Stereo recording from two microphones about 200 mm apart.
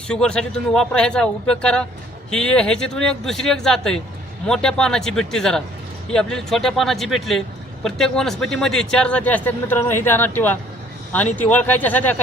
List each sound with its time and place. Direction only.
0.1 s a man's voice: 5° left (ahead or behind)